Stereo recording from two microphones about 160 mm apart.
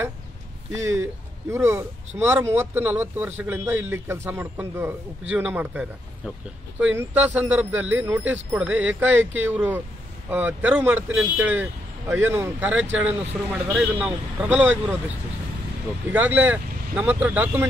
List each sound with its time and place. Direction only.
1.5 s speech: 15° right (ahead or behind)
16.1 s speech: 10° right (ahead or behind)